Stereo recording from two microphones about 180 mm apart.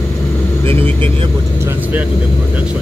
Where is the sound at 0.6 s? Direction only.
30° right (ahead or behind).